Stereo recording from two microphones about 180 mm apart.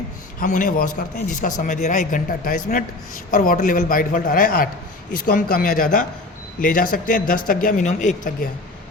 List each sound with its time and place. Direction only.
0.3 s a man's voice: 45° left (ahead or behind)